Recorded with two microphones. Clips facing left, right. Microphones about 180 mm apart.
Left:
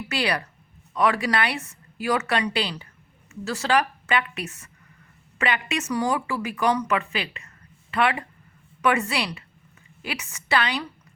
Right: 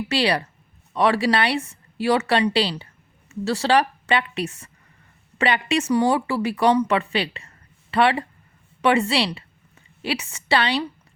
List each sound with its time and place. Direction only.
0.1 s speech: 30° right (ahead or behind)